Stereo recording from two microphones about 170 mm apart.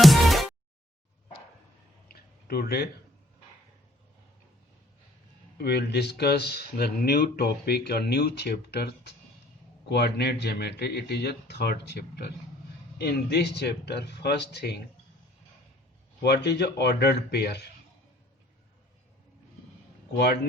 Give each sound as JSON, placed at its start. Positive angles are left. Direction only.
{"t": 0.0, "sound": "music", "side_deg": 0}
{"t": 2.0, "sound": "a sound", "side_deg": 65}
{"t": 5.5, "sound": "speech", "side_deg": 75}
{"t": 9.9, "sound": "speech", "side_deg": 70}
{"t": 16.2, "sound": "speech", "side_deg": 75}
{"t": 20.1, "sound": "speech", "side_deg": 70}